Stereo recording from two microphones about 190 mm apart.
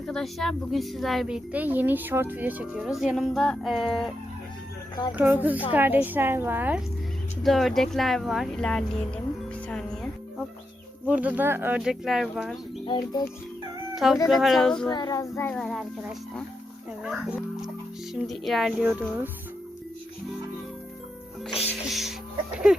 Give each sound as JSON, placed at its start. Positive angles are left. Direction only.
{"t": 0.1, "sound": "speech", "side_deg": 0}
{"t": 5.1, "sound": "speech", "side_deg": -10}
{"t": 7.4, "sound": "speech", "side_deg": 0}
{"t": 9.6, "sound": "music", "side_deg": 5}
{"t": 11.0, "sound": "speech", "side_deg": -10}
{"t": 12.8, "sound": "speech", "side_deg": 25}
{"t": 13.9, "sound": "speech", "side_deg": 0}
{"t": 14.8, "sound": "a child's voice", "side_deg": 20}
{"t": 21.7, "sound": "music", "side_deg": 0}